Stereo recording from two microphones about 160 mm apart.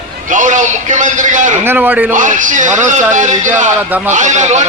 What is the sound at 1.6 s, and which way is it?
Speech, 10° right (ahead or behind).